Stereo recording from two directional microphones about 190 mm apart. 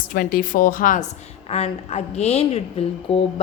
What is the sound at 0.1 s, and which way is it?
Speech, 50° left (ahead or behind).